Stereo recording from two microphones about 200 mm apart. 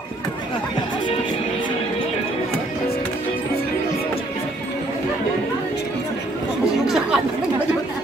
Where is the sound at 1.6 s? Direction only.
25° left (ahead or behind).